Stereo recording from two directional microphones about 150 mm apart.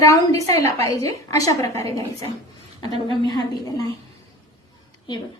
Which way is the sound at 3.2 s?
30° left (ahead or behind).